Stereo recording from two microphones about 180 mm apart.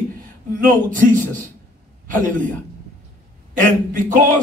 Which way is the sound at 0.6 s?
45° right (ahead or behind).